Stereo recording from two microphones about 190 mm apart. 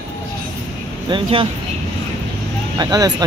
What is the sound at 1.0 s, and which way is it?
Speech, 25° right (ahead or behind).